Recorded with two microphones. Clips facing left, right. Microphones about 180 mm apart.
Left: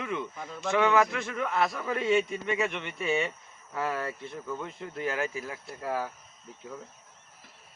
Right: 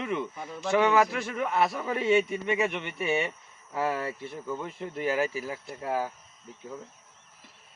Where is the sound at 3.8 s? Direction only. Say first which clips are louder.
Right 2 dB; 25° right (ahead or behind).